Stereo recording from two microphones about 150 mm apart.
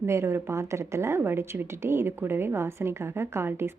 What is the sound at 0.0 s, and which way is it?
A woman's voice, 15° right (ahead or behind).